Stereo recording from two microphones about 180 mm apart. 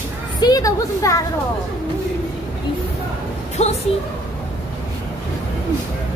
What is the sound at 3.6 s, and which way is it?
Speech, 35° left (ahead or behind).